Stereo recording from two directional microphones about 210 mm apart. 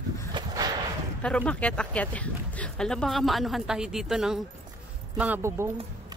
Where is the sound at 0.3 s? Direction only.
20° right (ahead or behind).